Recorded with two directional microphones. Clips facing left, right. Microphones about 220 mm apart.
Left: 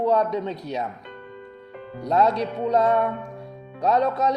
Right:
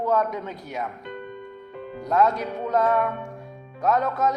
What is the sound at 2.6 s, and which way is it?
Speech, 20° left (ahead or behind).